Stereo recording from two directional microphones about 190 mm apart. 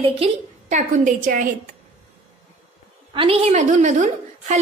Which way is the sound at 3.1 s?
30° right (ahead or behind).